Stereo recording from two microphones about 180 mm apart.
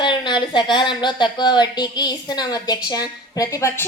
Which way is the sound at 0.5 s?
25° left (ahead or behind).